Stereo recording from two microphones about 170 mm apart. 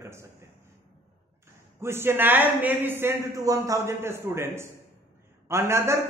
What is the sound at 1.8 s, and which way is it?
A man's voice, 15° right (ahead or behind).